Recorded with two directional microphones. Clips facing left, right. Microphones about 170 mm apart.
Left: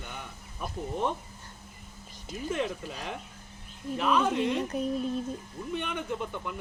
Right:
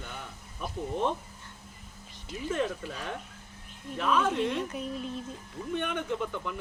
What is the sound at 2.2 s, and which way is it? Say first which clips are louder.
Speech: even; 45° left (ahead or behind).